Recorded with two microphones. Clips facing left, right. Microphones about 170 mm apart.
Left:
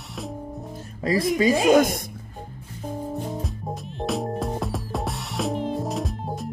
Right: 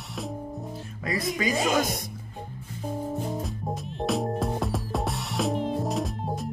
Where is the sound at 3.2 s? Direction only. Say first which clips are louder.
Even; centre (ahead or behind).